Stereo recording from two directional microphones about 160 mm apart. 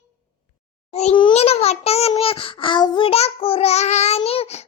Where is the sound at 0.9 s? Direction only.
40° left (ahead or behind).